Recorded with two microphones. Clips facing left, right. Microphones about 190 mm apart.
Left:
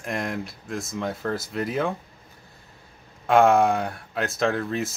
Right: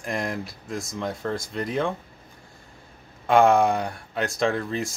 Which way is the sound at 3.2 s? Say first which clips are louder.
Even; centre (ahead or behind).